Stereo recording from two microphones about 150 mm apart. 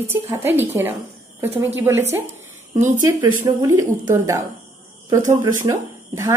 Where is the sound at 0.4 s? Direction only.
15° right (ahead or behind).